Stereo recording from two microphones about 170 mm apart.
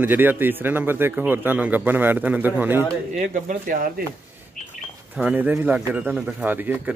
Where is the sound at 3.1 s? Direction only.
45° right (ahead or behind).